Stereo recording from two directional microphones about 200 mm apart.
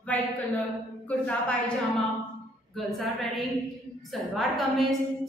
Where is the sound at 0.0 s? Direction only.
5° left (ahead or behind).